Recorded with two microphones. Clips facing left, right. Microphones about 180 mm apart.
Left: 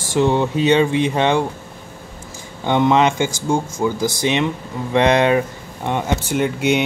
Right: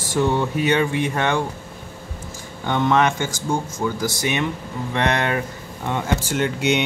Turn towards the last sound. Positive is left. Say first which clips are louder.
# left 3 dB
turn(degrees=5)  # may be behind; listen again after turning